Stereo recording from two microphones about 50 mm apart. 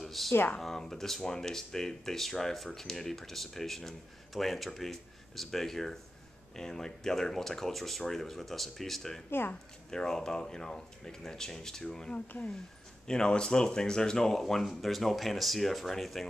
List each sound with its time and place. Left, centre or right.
0.0 s a sound: centre
0.6 s speech: centre
9.3 s speech: left
9.8 s speech: centre